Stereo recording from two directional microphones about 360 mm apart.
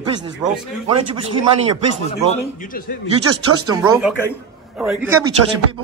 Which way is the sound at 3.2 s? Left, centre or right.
Right.